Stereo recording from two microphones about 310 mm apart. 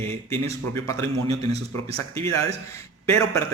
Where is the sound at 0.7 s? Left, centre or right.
Centre.